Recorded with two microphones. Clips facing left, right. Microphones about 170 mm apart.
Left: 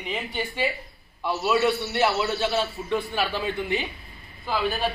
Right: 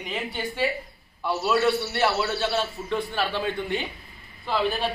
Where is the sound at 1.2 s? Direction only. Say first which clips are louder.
Even; 15° left (ahead or behind).